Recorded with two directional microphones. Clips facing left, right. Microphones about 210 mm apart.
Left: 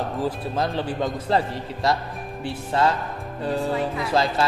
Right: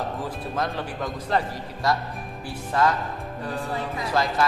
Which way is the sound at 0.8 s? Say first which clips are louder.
Left 5 dB; 30° left (ahead or behind).